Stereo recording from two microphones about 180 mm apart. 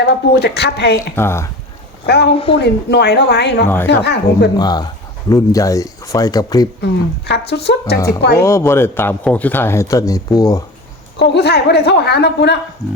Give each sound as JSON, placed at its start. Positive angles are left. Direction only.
{"t": 0.0, "sound": "a woman's voice", "side_deg": 65}
{"t": 0.9, "sound": "a man's voice", "side_deg": 15}
{"t": 2.0, "sound": "a woman's voice", "side_deg": 65}
{"t": 2.3, "sound": "a woman's voice", "side_deg": 30}
{"t": 2.6, "sound": "a woman's voice", "side_deg": 65}
{"t": 4.5, "sound": "speech", "side_deg": 20}
{"t": 6.8, "sound": "a woman's voice", "side_deg": 65}
{"t": 7.9, "sound": "a man's voice", "side_deg": 20}
{"t": 11.2, "sound": "a woman's voice", "side_deg": 65}